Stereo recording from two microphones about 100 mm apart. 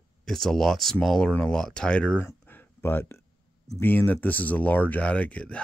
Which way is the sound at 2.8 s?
20° left (ahead or behind).